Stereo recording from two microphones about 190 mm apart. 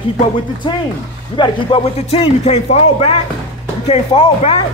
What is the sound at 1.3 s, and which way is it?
A man's voice, 25° left (ahead or behind).